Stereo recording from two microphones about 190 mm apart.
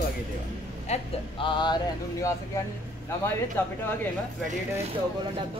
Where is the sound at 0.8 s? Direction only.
35° left (ahead or behind).